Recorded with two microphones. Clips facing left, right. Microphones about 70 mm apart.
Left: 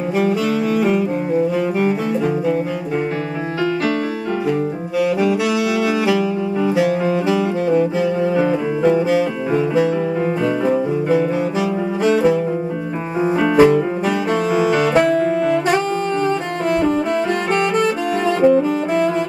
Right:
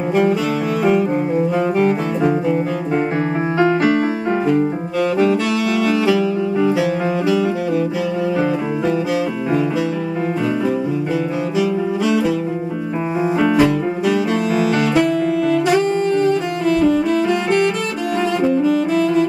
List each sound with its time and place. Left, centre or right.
0.1 s music: centre
1.8 s music: centre
3.5 s music: right
6.0 s saxophone: centre
8.4 s music: left
13.6 s music: left
15.0 s saxophone: left